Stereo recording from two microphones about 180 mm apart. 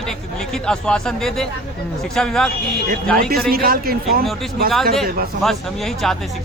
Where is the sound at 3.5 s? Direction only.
55° right (ahead or behind).